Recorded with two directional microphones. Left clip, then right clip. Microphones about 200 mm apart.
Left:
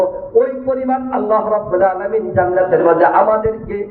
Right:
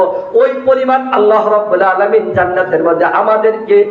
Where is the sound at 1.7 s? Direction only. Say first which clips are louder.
Right 3 dB; 55° right (ahead or behind).